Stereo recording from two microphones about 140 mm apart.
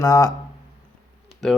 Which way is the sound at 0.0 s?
20° left (ahead or behind).